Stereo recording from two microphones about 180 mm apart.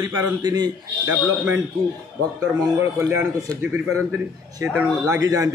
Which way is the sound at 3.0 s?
10° right (ahead or behind).